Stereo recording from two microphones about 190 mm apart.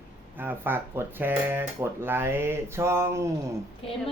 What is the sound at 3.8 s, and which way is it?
Speech, 30° left (ahead or behind).